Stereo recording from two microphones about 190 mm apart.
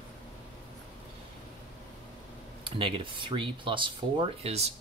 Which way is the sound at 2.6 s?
25° right (ahead or behind).